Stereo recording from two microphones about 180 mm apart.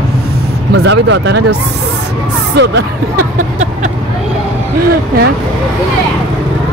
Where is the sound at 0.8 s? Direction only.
85° right.